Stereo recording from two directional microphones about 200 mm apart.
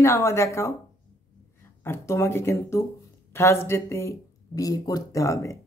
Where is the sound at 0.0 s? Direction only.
15° left (ahead or behind).